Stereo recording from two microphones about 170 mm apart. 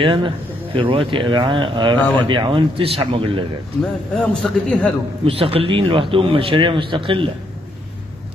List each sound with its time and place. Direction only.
0.0 s a man's voice: 30° right (ahead or behind)
4.1 s a man's voice: 5° left (ahead or behind)
5.2 s a man's voice: 35° right (ahead or behind)